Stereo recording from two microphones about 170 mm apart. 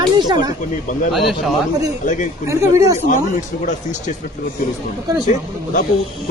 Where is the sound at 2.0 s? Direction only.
45° left (ahead or behind).